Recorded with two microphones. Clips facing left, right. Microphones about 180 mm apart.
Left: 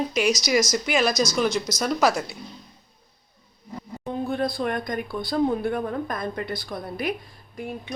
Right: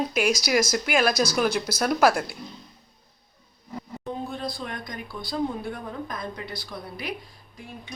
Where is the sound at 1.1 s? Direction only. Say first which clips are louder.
Even; 55° right (ahead or behind).